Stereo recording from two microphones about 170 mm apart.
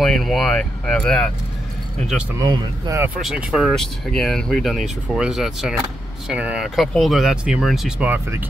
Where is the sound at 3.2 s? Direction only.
5° right (ahead or behind).